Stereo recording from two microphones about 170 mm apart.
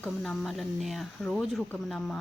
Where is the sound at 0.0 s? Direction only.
5° left (ahead or behind).